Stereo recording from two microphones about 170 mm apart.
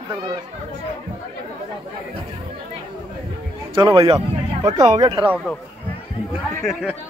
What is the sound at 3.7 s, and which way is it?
Speech, 25° right (ahead or behind).